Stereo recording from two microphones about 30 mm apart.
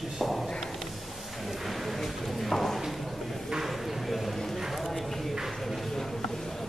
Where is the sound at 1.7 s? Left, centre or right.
Centre.